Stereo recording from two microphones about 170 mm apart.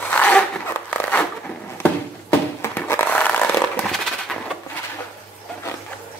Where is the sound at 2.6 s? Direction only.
10° left (ahead or behind).